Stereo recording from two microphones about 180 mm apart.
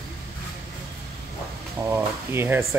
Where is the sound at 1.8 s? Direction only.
10° right (ahead or behind).